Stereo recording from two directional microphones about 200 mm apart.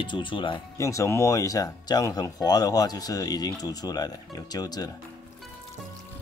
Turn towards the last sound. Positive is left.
turn(degrees=20)  # may be behind; listen again after turning